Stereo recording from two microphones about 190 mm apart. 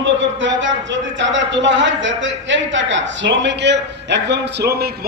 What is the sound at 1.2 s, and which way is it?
A man's voice, 70° right (ahead or behind).